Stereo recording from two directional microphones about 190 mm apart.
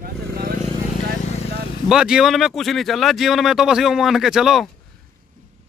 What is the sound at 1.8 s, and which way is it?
Speech, 5° right (ahead or behind).